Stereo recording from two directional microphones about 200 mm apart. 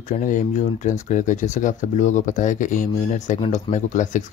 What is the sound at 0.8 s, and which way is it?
Speech, 40° left (ahead or behind).